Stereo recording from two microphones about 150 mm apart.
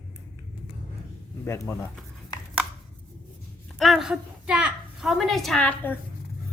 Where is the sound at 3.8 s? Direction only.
Centre (ahead or behind).